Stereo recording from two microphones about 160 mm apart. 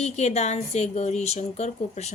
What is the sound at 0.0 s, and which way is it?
A woman's voice, 45° left (ahead or behind).